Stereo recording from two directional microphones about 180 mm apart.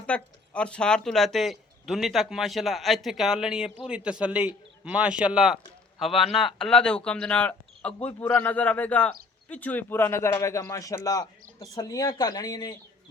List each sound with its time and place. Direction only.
0.0 s speech: 5° left (ahead or behind)